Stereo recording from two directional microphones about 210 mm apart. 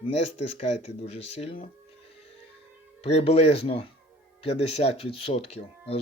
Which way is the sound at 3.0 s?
30° left (ahead or behind).